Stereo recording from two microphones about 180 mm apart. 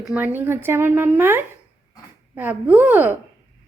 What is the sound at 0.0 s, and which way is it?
Speech, 10° right (ahead or behind).